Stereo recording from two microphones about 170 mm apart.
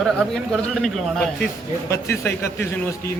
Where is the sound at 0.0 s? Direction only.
Centre (ahead or behind).